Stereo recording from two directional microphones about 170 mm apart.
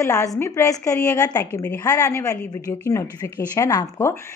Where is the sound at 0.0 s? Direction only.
20° left (ahead or behind).